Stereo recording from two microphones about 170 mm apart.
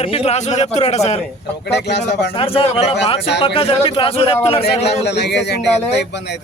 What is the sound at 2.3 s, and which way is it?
A man's voice, 35° left (ahead or behind).